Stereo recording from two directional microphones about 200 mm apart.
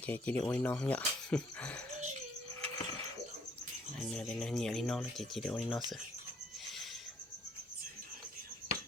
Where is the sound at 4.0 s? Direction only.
5° left (ahead or behind).